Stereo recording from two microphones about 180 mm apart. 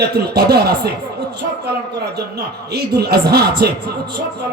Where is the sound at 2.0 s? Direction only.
65° right (ahead or behind).